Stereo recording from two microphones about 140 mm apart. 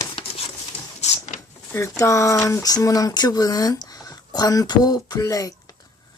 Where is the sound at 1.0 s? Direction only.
60° left (ahead or behind).